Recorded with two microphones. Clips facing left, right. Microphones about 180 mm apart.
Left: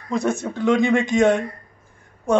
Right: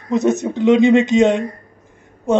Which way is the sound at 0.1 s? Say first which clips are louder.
Right 6 dB; 20° right (ahead or behind).